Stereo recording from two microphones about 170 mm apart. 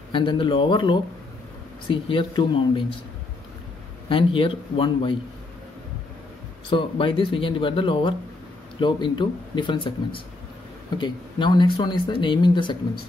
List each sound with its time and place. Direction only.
0.1 s speech: 30° left (ahead or behind)
4.1 s speech: 30° left (ahead or behind)
6.7 s speech: 30° left (ahead or behind)